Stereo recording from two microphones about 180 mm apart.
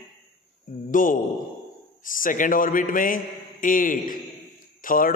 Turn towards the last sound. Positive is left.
turn(degrees=50)  # may be behind; listen again after turning